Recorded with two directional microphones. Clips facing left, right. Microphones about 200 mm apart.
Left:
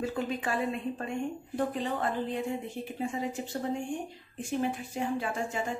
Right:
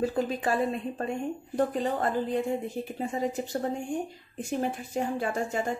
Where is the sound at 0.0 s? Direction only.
35° right (ahead or behind).